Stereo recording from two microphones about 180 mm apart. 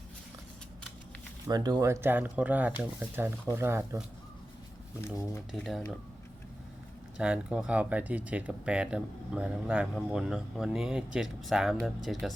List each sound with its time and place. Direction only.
1.5 s speech: 20° right (ahead or behind)
4.9 s speech: 15° left (ahead or behind)
5.5 s speech: centre (ahead or behind)
7.2 s speech: 5° right (ahead or behind)